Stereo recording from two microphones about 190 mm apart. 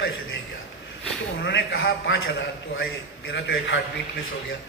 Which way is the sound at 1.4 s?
60° left (ahead or behind).